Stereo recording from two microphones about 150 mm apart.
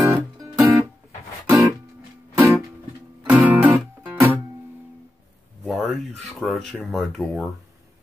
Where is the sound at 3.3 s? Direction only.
10° right (ahead or behind).